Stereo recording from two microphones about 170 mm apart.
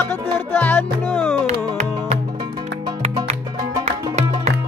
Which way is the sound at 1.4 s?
40° right (ahead or behind).